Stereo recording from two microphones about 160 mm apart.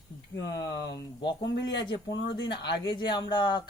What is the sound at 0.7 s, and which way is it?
Speech, 90° left.